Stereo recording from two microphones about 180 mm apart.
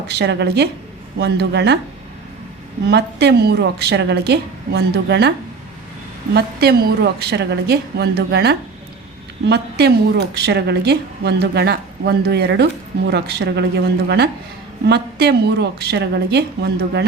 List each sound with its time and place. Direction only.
0.1 s a woman's voice: 70° right (ahead or behind)
2.9 s a woman's voice: 65° right (ahead or behind)
6.3 s a woman's voice: 60° right (ahead or behind)
14.8 s a woman's voice: 65° right (ahead or behind)